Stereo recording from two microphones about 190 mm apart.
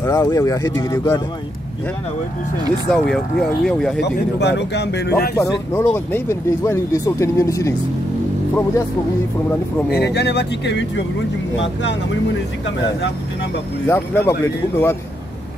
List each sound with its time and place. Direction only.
0.0 s speech: 15° left (ahead or behind)
2.9 s speech: 5° left (ahead or behind)
4.0 s speech: 65° left (ahead or behind)
5.3 s speech: 15° left (ahead or behind)
9.8 s speech: 60° left (ahead or behind)
13.8 s speech: 15° left (ahead or behind)